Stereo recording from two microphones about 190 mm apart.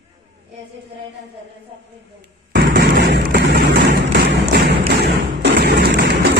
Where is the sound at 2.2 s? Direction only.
55° right (ahead or behind).